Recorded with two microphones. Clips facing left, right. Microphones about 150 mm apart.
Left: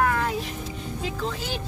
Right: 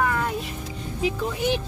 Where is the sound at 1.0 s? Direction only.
20° right (ahead or behind).